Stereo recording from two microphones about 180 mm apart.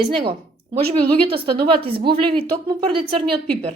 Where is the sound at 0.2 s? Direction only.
30° right (ahead or behind).